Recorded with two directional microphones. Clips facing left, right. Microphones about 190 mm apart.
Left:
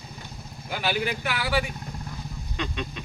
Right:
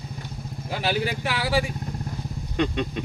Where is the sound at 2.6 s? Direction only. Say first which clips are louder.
Right 8 dB; 50° right (ahead or behind).